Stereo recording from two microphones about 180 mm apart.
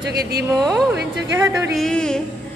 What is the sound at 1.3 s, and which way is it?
Speech, 15° right (ahead or behind).